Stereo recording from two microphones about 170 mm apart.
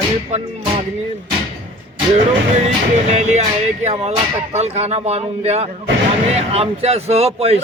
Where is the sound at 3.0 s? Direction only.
40° right (ahead or behind).